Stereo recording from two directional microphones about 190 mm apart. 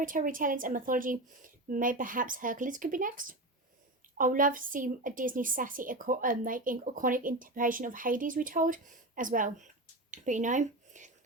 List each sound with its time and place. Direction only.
0.0 s a woman's voice: 45° right (ahead or behind)